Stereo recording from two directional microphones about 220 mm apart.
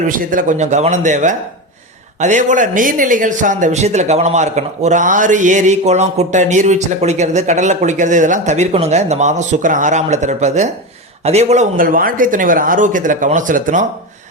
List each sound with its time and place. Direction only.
0.1 s speech: 40° right (ahead or behind)